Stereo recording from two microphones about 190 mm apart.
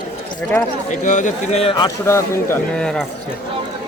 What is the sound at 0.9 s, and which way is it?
Speech, 40° left (ahead or behind).